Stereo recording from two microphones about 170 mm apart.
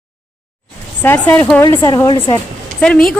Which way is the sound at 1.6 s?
20° left (ahead or behind).